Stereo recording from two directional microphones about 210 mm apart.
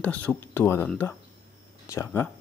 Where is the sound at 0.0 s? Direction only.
5° left (ahead or behind).